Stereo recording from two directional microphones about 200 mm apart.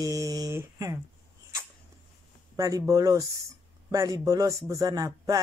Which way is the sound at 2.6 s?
15° right (ahead or behind).